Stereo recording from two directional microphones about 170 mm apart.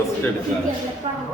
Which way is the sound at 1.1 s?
35° right (ahead or behind).